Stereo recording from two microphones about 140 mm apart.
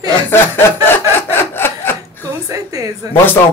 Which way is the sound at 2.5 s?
25° right (ahead or behind).